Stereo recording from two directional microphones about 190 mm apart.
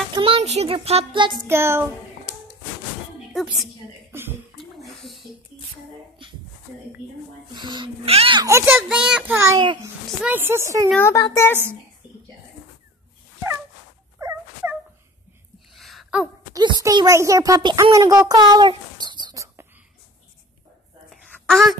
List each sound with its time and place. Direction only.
0.1 s music: 30° right (ahead or behind)
1.5 s a child's voice: 15° right (ahead or behind)
3.3 s a woman's voice: centre (ahead or behind)
4.1 s speech: 10° right (ahead or behind)
4.6 s a sound: centre (ahead or behind)
7.5 s speech: 25° right (ahead or behind)
8.5 s a child's voice: 15° right (ahead or behind)
11.0 s speech: 15° left (ahead or behind)
14.2 s dog: 10° right (ahead or behind)
15.7 s a sound: centre (ahead or behind)
16.5 s a child's voice: 20° right (ahead or behind)
21.1 s a sound: centre (ahead or behind)